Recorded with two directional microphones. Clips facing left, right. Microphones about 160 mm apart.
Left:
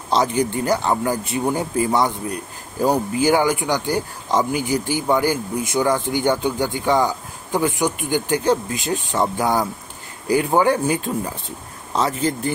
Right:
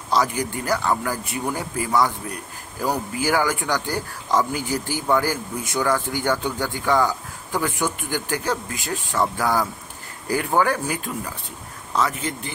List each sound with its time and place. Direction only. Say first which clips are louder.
0.1 s speech: left 3 dB; 25° left (ahead or behind)